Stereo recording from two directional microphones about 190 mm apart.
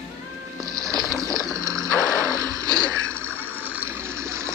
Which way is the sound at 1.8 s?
5° left (ahead or behind).